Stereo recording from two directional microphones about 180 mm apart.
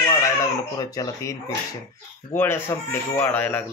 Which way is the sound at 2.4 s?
15° left (ahead or behind).